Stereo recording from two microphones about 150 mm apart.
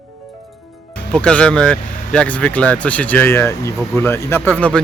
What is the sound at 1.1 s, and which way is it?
Speech, 5° left (ahead or behind).